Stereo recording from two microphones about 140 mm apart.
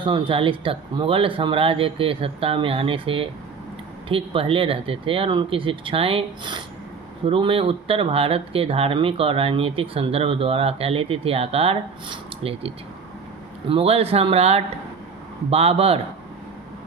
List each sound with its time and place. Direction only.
0.0 s speech: 40° right (ahead or behind)